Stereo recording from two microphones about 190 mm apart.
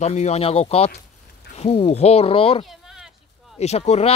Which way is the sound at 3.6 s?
35° left (ahead or behind).